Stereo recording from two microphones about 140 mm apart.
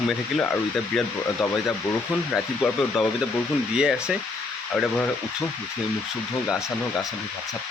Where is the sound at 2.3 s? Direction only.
Centre (ahead or behind).